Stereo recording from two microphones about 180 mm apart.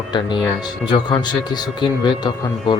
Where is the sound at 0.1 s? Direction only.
25° left (ahead or behind).